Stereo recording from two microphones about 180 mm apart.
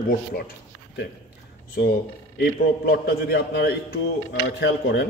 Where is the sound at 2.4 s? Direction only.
60° left (ahead or behind).